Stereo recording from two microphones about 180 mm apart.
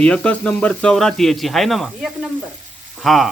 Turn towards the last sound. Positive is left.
turn(degrees=0)  # may be behind; listen again after turning